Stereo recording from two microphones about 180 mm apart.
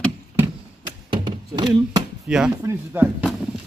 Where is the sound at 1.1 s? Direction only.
25° right (ahead or behind).